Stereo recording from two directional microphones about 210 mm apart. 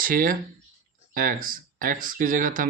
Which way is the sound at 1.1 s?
40° right (ahead or behind).